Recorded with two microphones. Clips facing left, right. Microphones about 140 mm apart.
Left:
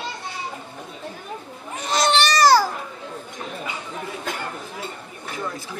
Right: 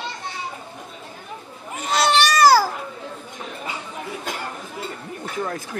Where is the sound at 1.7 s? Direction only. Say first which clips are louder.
Right 1 dB; 5° right (ahead or behind).